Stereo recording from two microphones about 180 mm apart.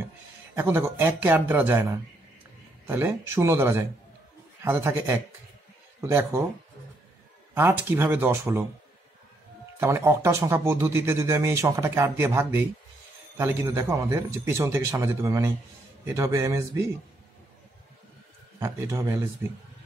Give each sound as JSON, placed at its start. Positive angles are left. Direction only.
{"t": 0.6, "sound": "speech", "side_deg": -10}
{"t": 2.9, "sound": "speech", "side_deg": -15}
{"t": 7.5, "sound": "speech", "side_deg": -10}
{"t": 9.8, "sound": "speech", "side_deg": -15}
{"t": 18.6, "sound": "speech", "side_deg": -15}